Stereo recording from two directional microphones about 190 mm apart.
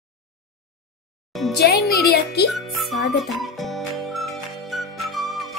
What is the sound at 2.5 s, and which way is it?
Music, centre (ahead or behind).